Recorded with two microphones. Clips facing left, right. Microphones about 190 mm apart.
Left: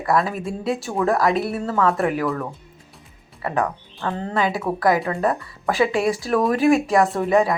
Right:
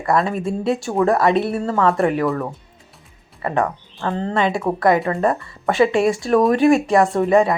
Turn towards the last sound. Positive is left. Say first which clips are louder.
# right 3 dB
turn(degrees=0)  # may be behind; listen again after turning